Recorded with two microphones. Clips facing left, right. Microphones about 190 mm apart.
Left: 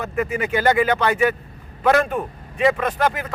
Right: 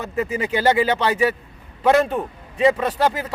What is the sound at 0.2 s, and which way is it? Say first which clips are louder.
A man's voice: even; 25° right (ahead or behind).